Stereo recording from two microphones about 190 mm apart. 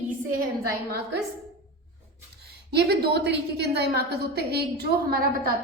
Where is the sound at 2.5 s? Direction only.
55° right (ahead or behind).